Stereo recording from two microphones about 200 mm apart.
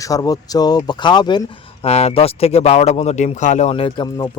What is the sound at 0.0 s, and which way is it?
Speech, 15° left (ahead or behind).